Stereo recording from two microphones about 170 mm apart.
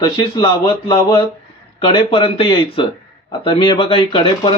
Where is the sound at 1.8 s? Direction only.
30° left (ahead or behind).